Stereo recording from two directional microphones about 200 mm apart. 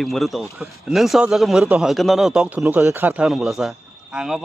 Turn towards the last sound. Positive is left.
turn(degrees=0)  # may be behind; listen again after turning